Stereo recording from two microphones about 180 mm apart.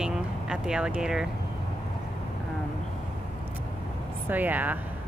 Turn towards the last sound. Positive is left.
turn(degrees=-10)  # may be behind; listen again after turning